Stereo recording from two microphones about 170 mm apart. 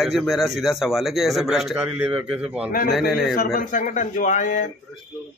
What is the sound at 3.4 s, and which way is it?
Speech, 55° left (ahead or behind).